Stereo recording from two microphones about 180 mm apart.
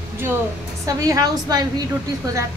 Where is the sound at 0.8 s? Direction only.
20° right (ahead or behind).